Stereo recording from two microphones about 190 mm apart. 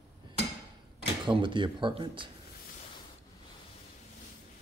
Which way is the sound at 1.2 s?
25° right (ahead or behind).